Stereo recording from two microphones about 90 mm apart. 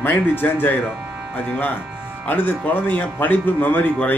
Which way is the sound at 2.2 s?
20° left (ahead or behind).